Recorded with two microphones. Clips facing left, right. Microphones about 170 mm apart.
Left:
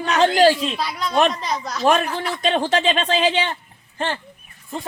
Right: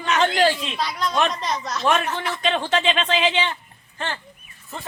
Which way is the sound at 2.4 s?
40° left (ahead or behind).